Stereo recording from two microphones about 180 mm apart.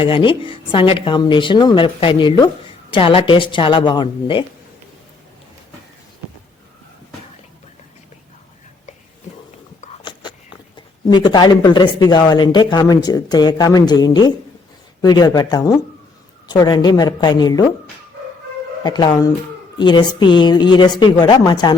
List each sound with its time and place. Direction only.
0.0 s speech: 30° left (ahead or behind)
10.0 s a sound: 25° left (ahead or behind)
10.8 s speech: 25° left (ahead or behind)
18.8 s speech: 25° left (ahead or behind)